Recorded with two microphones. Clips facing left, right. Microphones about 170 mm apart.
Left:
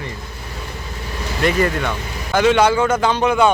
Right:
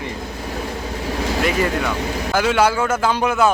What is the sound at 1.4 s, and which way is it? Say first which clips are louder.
Speech: left 4 dB; 5° right (ahead or behind).